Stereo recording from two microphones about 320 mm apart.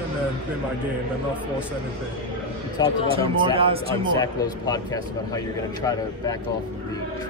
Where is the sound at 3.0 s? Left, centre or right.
Centre.